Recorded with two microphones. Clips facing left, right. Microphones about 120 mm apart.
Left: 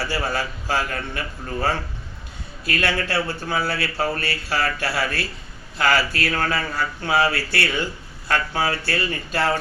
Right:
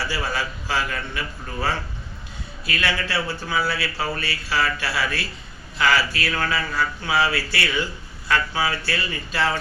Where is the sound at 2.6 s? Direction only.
50° left (ahead or behind).